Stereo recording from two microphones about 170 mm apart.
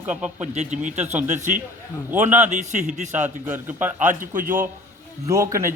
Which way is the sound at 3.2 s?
10° right (ahead or behind).